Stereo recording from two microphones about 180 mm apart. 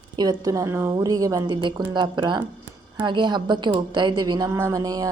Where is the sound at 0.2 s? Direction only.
20° right (ahead or behind).